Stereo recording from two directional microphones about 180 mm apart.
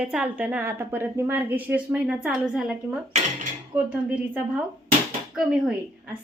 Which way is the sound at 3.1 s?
40° right (ahead or behind).